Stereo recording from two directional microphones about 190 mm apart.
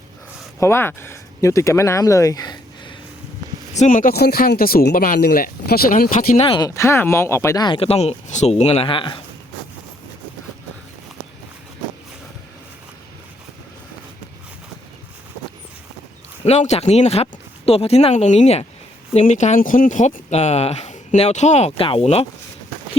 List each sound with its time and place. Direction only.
0.6 s speech: 10° left (ahead or behind)
3.8 s speech: 45° left (ahead or behind)
6.4 s speech: 25° left (ahead or behind)
16.4 s speech: 35° left (ahead or behind)